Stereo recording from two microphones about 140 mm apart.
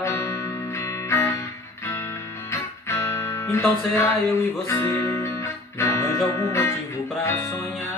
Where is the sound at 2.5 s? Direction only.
20° left (ahead or behind).